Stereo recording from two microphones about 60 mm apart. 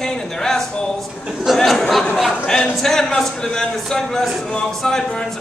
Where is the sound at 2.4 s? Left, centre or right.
Centre.